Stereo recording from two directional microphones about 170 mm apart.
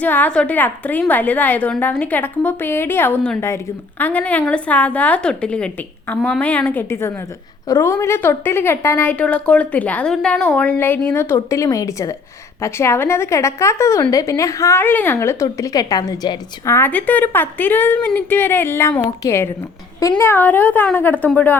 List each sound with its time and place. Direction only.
0.0 s a woman's voice: 10° left (ahead or behind)